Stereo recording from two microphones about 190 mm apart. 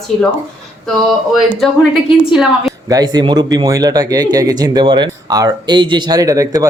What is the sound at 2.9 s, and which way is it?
Speech, 20° right (ahead or behind).